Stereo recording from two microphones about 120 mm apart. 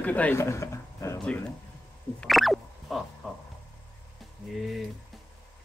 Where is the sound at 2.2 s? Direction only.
Centre (ahead or behind).